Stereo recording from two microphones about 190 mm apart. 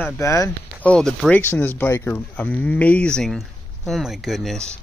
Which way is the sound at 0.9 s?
5° left (ahead or behind).